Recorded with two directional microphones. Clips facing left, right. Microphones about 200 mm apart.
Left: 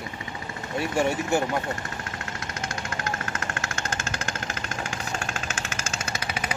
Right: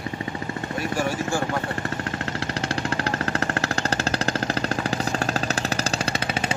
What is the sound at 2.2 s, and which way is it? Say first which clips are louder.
Vehicle: right 7 dB; 35° right (ahead or behind).